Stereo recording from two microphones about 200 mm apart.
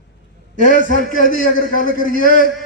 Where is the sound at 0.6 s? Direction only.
40° left (ahead or behind).